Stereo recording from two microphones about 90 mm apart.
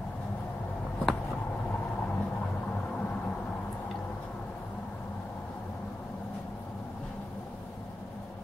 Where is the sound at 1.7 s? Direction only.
20° left (ahead or behind).